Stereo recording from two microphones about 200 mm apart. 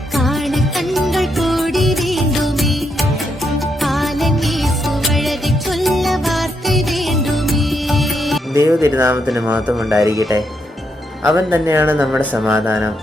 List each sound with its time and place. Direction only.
0.2 s music: centre (ahead or behind)
8.5 s music: 10° right (ahead or behind)
9.2 s speech: 5° right (ahead or behind)
11.3 s speech: 10° right (ahead or behind)